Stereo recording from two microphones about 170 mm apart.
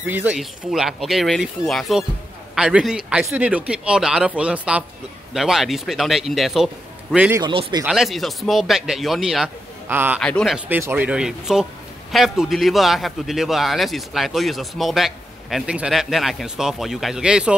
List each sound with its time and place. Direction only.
0.0 s a man's voice: 10° right (ahead or behind)
7.3 s speech: 25° right (ahead or behind)
7.8 s a man's voice: centre (ahead or behind)
9.8 s speech: 10° right (ahead or behind)
10.2 s a man's voice: centre (ahead or behind)
10.7 s a man's voice: 10° right (ahead or behind)